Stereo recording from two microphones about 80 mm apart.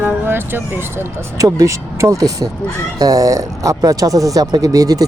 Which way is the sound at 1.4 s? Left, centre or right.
Right.